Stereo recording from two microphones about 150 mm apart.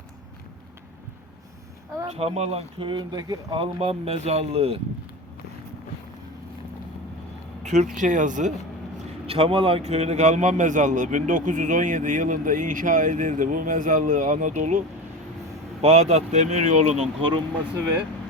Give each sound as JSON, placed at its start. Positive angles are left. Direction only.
{"t": 2.0, "sound": "speech", "side_deg": -45}
{"t": 7.6, "sound": "a man's voice", "side_deg": -50}
{"t": 9.2, "sound": "a man's voice", "side_deg": -40}
{"t": 15.8, "sound": "speech", "side_deg": -45}